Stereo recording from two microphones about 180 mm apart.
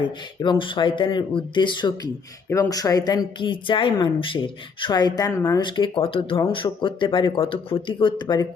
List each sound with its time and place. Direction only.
0.4 s speech: 25° left (ahead or behind)